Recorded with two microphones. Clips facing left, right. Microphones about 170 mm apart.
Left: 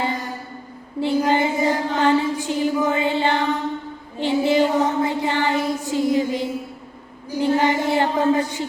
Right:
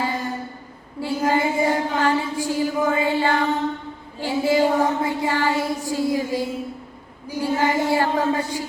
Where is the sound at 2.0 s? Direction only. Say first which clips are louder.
Left 3 dB; 20° left (ahead or behind).